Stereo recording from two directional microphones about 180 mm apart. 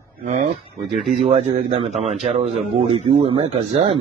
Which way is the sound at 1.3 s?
35° right (ahead or behind).